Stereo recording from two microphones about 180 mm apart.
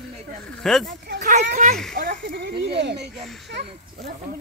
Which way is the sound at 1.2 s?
45° right (ahead or behind).